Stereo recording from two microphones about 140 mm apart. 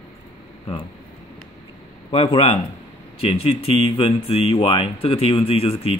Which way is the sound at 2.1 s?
40° left (ahead or behind).